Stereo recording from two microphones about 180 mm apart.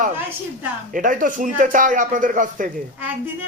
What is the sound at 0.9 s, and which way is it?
Speech, 45° right (ahead or behind).